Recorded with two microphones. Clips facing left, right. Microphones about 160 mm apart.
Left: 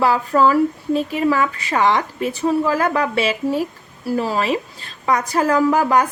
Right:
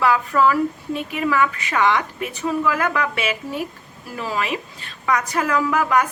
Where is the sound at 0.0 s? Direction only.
30° left (ahead or behind).